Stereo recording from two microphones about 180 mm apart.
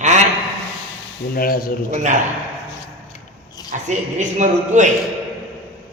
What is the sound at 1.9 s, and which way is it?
Speech, 40° right (ahead or behind).